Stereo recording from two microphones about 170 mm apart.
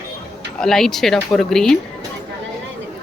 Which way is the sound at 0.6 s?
Centre (ahead or behind).